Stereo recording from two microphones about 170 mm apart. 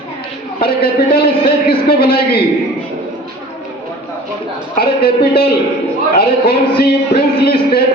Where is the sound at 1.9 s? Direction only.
65° left (ahead or behind).